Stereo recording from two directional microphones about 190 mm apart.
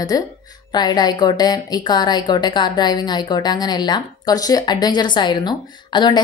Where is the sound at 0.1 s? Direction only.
20° left (ahead or behind).